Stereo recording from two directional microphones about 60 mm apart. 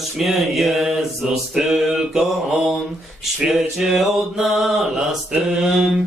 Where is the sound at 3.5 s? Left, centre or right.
Centre.